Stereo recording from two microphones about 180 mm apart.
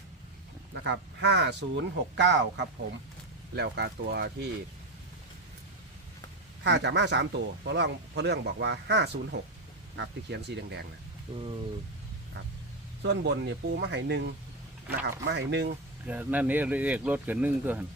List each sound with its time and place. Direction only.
1.2 s speech: 70° right (ahead or behind)
3.5 s speech: 65° right (ahead or behind)
6.6 s speech: 75° right (ahead or behind)
11.3 s speech: 25° right (ahead or behind)
13.0 s speech: 70° right (ahead or behind)
16.0 s speech: 10° right (ahead or behind)